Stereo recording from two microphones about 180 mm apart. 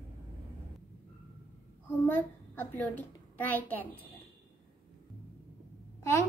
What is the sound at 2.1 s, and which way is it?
A child's voice, 10° left (ahead or behind).